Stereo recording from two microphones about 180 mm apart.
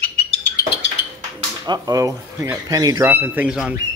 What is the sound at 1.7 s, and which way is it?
Speech, 20° right (ahead or behind).